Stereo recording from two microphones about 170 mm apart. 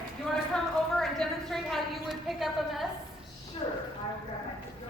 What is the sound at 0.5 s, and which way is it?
A woman's voice, 5° left (ahead or behind).